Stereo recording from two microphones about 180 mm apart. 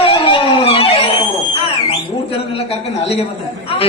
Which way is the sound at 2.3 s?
35° left (ahead or behind).